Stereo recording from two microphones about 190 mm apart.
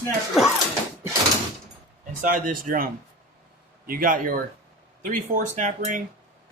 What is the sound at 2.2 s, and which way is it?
Speech, 45° right (ahead or behind).